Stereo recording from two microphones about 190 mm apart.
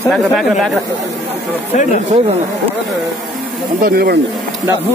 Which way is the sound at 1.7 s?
40° left (ahead or behind).